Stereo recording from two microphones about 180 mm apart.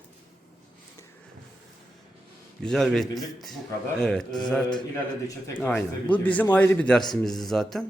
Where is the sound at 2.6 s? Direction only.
Centre (ahead or behind).